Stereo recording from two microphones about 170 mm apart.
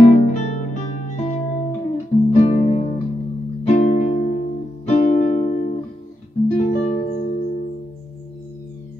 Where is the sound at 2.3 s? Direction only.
45° left (ahead or behind).